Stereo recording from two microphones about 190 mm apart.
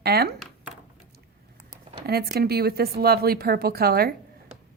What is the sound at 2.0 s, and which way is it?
A woman's voice, 55° right (ahead or behind).